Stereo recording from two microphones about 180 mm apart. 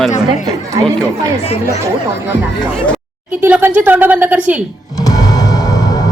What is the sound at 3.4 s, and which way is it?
A woman's voice, 10° right (ahead or behind).